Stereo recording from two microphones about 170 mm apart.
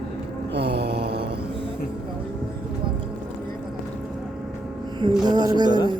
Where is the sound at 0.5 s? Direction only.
80° right.